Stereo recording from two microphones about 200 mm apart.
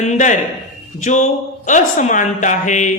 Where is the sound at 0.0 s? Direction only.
35° left (ahead or behind).